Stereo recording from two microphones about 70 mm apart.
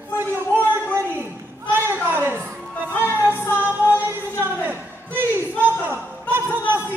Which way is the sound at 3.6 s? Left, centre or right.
Right.